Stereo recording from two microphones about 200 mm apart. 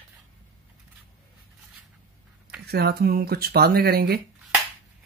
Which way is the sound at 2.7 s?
50° right (ahead or behind).